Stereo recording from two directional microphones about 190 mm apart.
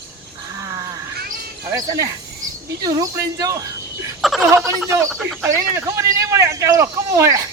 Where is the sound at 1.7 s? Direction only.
15° right (ahead or behind).